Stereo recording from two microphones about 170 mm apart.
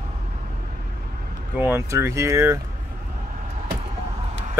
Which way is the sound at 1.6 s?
15° right (ahead or behind).